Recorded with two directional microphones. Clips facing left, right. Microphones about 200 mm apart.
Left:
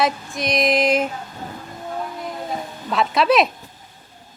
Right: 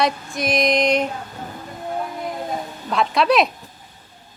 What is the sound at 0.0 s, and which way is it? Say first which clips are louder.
A woman's voice: even; centre (ahead or behind).